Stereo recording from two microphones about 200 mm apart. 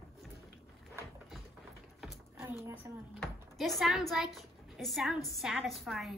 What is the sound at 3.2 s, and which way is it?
A woman's voice, centre (ahead or behind).